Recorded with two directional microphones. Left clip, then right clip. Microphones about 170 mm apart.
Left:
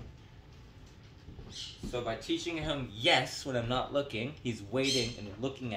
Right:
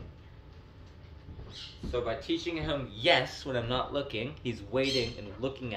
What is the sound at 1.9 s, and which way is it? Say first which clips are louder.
Speech: right 3 dB; 35° left (ahead or behind).